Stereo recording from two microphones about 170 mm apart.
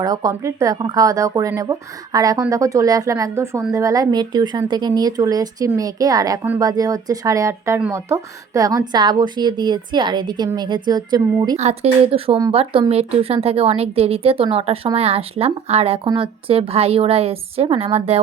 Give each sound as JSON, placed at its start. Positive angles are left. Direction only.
{"t": 0.0, "sound": "a woman's voice", "side_deg": -25}
{"t": 11.5, "sound": "speech", "side_deg": -40}